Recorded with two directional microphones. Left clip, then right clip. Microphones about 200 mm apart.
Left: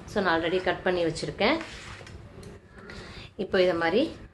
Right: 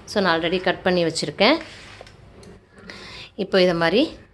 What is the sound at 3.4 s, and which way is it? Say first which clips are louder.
Speech: right 6 dB; 50° right (ahead or behind).